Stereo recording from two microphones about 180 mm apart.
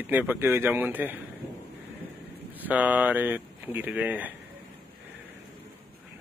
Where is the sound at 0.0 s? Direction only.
10° right (ahead or behind).